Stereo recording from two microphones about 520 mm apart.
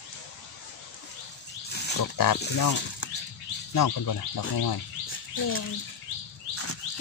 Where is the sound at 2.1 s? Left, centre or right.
Left.